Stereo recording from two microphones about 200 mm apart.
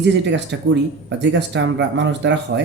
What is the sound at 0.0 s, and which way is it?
Speech, 60° right (ahead or behind).